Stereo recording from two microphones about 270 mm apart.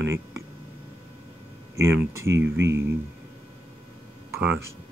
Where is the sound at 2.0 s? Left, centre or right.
Centre.